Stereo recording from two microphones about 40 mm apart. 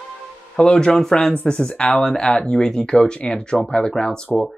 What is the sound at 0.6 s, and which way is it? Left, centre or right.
Speech, left.